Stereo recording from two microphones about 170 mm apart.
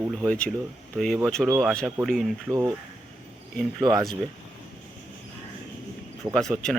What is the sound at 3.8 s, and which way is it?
Speech, 25° right (ahead or behind).